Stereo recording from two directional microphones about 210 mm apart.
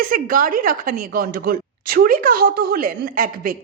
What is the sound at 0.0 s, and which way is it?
A woman's voice, 40° right (ahead or behind).